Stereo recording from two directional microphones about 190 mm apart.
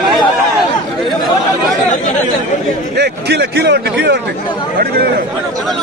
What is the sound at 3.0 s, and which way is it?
Speech, 60° right (ahead or behind).